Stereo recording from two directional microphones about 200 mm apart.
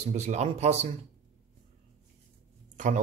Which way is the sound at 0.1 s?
35° right (ahead or behind).